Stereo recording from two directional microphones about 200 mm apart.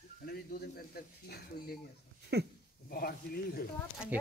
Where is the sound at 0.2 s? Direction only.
50° left (ahead or behind).